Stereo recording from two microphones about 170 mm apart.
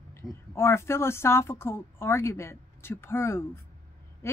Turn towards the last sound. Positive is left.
turn(degrees=15)  # may be behind; listen again after turning